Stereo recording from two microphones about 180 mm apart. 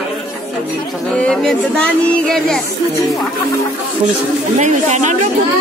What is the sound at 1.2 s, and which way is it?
Speech, 5° left (ahead or behind).